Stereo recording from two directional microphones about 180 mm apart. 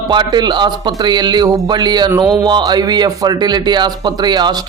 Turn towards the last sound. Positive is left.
turn(degrees=-25)  # may be behind; listen again after turning